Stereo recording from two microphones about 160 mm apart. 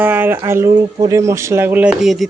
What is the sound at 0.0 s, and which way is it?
Speech, 10° right (ahead or behind).